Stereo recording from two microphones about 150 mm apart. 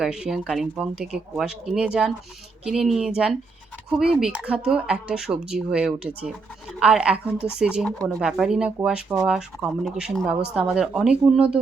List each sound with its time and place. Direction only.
0.0 s speech: 5° right (ahead or behind)